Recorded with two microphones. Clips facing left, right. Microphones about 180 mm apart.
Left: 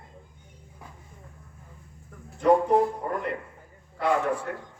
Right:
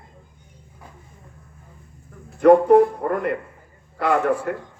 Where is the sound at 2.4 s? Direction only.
70° right (ahead or behind).